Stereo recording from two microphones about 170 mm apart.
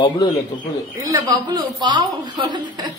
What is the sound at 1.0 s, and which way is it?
A man's voice, 20° right (ahead or behind).